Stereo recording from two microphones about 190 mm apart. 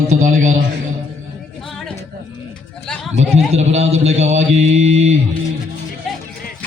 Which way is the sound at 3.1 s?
35° right (ahead or behind).